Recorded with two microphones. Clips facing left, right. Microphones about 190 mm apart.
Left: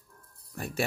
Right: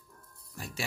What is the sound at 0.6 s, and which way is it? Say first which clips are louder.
Speech: left 6 dB; 55° left (ahead or behind).